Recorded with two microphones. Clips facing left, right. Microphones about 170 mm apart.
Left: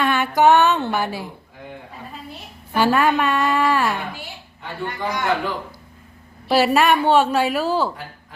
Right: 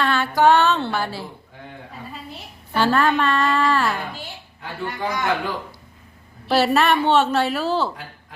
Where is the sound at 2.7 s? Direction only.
15° left (ahead or behind).